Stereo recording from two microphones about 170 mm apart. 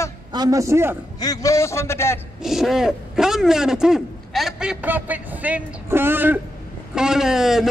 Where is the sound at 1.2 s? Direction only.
20° left (ahead or behind).